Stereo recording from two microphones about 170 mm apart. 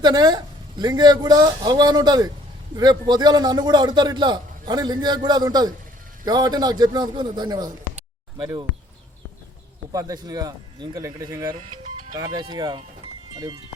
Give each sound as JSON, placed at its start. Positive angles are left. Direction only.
{"t": 0.0, "sound": "a man's voice", "side_deg": -25}
{"t": 9.9, "sound": "a man's voice", "side_deg": -20}
{"t": 11.5, "sound": "music", "side_deg": -40}
{"t": 12.1, "sound": "speech", "side_deg": -25}